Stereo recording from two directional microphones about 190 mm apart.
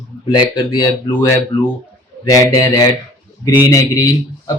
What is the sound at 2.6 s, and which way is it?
Speech, 20° left (ahead or behind).